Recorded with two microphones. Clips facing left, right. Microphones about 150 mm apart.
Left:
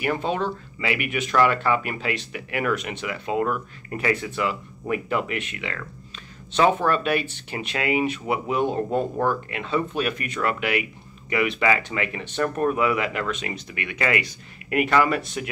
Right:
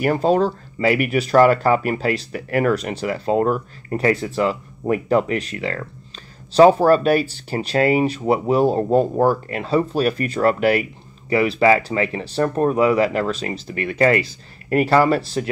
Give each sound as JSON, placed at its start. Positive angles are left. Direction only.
{"t": 0.0, "sound": "speech", "side_deg": -40}